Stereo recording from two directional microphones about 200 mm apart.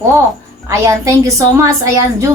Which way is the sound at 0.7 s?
15° right (ahead or behind).